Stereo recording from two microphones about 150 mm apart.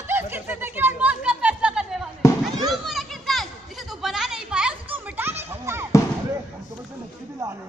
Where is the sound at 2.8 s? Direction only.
Centre (ahead or behind); by 5.9 s 15° right (ahead or behind).